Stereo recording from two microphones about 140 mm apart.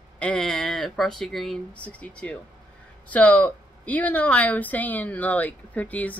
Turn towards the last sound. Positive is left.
turn(degrees=10)  # may be behind; listen again after turning